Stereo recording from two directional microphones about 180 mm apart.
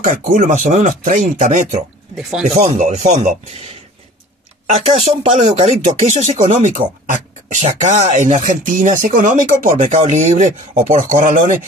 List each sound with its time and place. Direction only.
0.0 s speech: 45° right (ahead or behind)
4.6 s speech: 35° right (ahead or behind)